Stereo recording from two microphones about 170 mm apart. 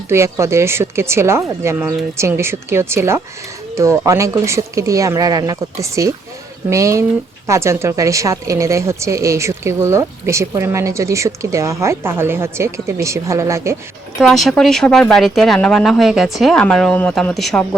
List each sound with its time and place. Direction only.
0.1 s a woman's voice: 15° right (ahead or behind)
14.2 s speech: centre (ahead or behind)